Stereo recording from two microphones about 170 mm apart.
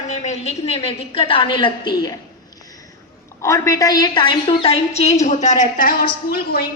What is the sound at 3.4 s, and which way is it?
A woman's voice, 15° left (ahead or behind).